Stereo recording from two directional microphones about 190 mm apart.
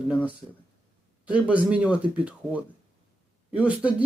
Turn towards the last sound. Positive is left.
turn(degrees=-5)  # may be behind; listen again after turning